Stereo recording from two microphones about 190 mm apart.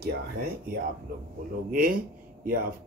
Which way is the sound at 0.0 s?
55° right (ahead or behind).